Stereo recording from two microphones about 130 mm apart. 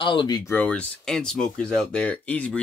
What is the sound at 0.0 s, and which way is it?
Speech, 40° left (ahead or behind).